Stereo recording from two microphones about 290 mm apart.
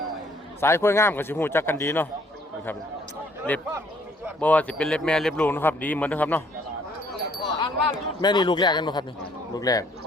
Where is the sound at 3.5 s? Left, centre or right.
Centre.